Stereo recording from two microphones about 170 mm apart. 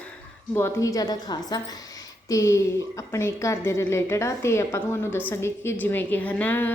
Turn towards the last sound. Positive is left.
turn(degrees=10)  # may be behind; listen again after turning